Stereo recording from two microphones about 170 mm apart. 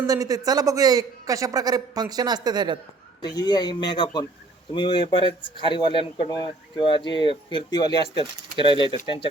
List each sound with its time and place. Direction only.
0.1 s a man's voice: 20° right (ahead or behind)
3.2 s speech: 25° left (ahead or behind)